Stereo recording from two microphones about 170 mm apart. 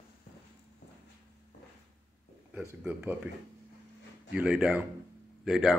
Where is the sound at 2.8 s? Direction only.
10° right (ahead or behind).